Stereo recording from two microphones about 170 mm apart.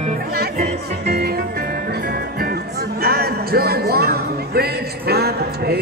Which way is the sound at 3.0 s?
65° right (ahead or behind).